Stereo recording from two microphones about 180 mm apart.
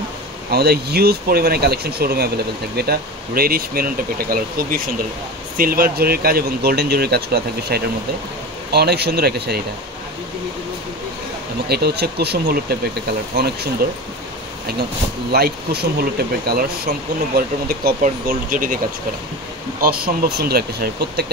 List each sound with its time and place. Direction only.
0.5 s speech: 60° right (ahead or behind)
11.7 s speech: 65° right (ahead or behind)
15.3 s speech: 60° right (ahead or behind)
19.8 s speech: 60° right (ahead or behind)